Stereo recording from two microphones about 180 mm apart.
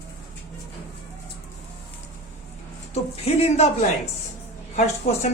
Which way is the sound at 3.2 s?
35° left (ahead or behind).